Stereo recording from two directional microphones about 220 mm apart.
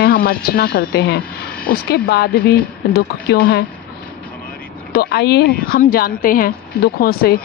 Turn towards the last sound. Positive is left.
turn(degrees=45)  # may be behind; listen again after turning